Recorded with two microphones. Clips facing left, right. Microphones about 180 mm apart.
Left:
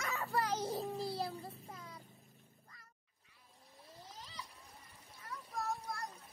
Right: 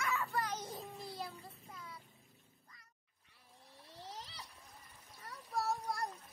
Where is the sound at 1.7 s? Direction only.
45° left (ahead or behind).